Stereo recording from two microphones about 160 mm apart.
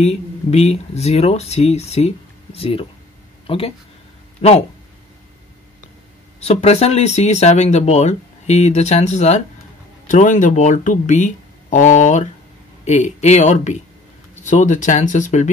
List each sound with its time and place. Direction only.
0.0 s speech: 40° left (ahead or behind)
6.4 s speech: 40° left (ahead or behind)